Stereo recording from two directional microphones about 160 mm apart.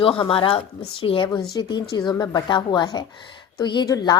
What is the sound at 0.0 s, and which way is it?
A woman's voice, 35° left (ahead or behind).